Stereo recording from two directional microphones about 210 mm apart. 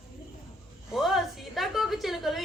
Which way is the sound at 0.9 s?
Centre (ahead or behind).